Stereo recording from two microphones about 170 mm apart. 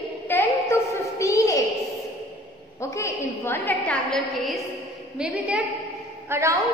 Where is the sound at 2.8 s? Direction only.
15° left (ahead or behind); by 5.6 s 5° right (ahead or behind).